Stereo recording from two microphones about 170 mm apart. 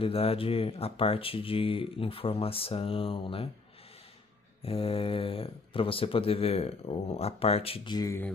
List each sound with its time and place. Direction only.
0.0 s speech: 35° left (ahead or behind)
4.6 s speech: 35° left (ahead or behind); by 8.3 s 20° left (ahead or behind)